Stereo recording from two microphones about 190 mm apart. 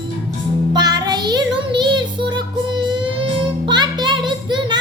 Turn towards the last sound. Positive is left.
turn(degrees=-25)  # may be behind; listen again after turning